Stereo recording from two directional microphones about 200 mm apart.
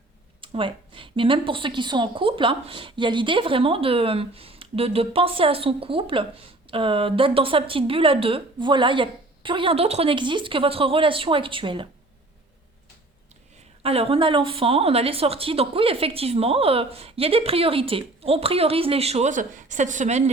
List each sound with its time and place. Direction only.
0.4 s a woman's voice: 25° right (ahead or behind)
13.8 s a woman's voice: 30° right (ahead or behind)